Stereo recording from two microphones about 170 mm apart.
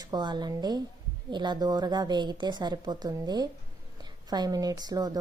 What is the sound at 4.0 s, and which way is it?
A woman's voice, 25° right (ahead or behind).